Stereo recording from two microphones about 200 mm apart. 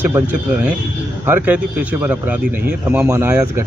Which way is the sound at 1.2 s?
10° right (ahead or behind).